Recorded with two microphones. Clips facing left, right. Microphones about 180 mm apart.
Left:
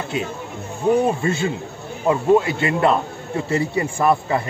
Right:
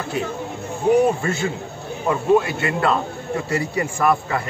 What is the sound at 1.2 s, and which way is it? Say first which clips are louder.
A man's voice: left 2 dB; 25° left (ahead or behind).